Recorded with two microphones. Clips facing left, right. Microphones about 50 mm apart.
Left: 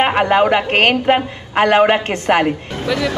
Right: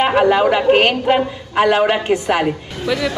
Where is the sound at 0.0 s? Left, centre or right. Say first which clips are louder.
Even; left.